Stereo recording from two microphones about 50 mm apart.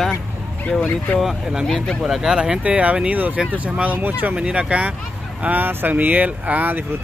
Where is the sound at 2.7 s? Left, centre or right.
Right.